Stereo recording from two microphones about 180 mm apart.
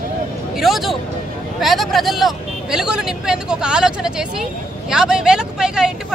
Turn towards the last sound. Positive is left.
turn(degrees=-5)  # may be behind; listen again after turning